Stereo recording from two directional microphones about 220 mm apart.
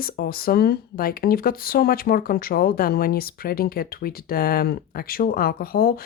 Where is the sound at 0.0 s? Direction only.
40° left (ahead or behind).